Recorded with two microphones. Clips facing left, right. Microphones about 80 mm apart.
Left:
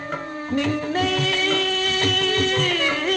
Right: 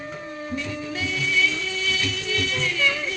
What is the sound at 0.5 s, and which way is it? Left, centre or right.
Music, left.